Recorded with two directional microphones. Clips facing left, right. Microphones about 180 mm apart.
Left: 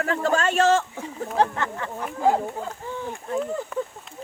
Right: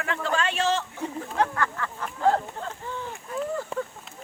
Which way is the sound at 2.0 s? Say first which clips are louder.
Left 2 dB; 10° left (ahead or behind).